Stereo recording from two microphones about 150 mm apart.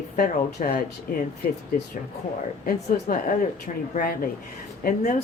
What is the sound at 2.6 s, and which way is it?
Speech, 70° left (ahead or behind).